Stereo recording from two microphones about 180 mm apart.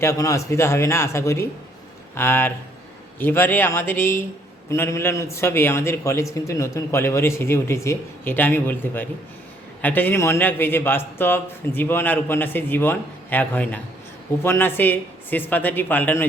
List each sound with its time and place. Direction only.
0.0 s a man's voice: 15° left (ahead or behind)